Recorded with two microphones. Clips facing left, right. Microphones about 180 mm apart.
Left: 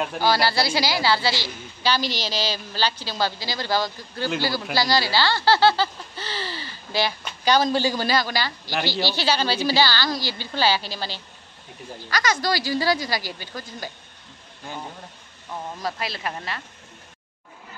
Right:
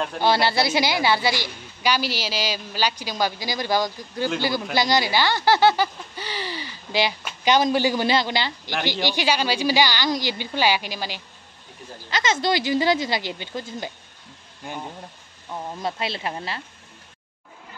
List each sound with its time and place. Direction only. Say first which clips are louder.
0.2 s a woman's voice: right 2 dB; 25° right (ahead or behind)
12.1 s a woman's voice: right 1 dB; 25° right (ahead or behind)
15.8 s a woman's voice: right 2 dB; 25° right (ahead or behind)